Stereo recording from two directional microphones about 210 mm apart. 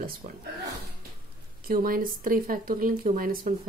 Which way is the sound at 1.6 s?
45° right (ahead or behind).